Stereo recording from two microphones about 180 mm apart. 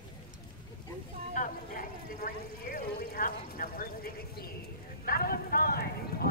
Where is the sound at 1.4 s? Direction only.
50° left (ahead or behind).